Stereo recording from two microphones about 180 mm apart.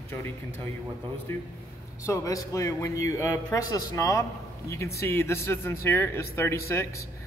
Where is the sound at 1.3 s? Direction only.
15° left (ahead or behind).